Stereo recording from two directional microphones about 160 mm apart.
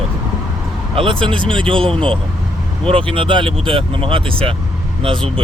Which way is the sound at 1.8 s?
5° left (ahead or behind).